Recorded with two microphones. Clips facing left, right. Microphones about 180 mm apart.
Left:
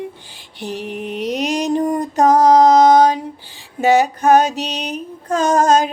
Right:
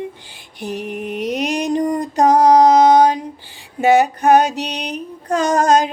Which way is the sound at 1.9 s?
15° right (ahead or behind).